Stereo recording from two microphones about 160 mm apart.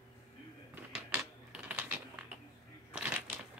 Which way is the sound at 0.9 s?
10° right (ahead or behind).